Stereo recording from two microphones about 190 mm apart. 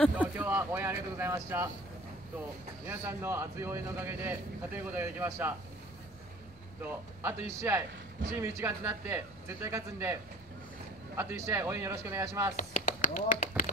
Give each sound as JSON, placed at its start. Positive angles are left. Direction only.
{"t": 0.2, "sound": "speech", "side_deg": -10}
{"t": 2.9, "sound": "a man's voice", "side_deg": -10}
{"t": 6.8, "sound": "a man's voice", "side_deg": -10}
{"t": 11.1, "sound": "a man's voice", "side_deg": -15}
{"t": 12.5, "sound": "speech", "side_deg": 45}